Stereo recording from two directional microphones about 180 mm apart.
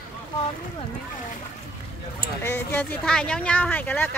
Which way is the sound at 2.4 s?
10° left (ahead or behind).